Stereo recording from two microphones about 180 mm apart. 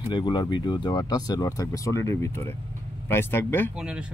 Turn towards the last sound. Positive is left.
turn(degrees=10)  # may be behind; listen again after turning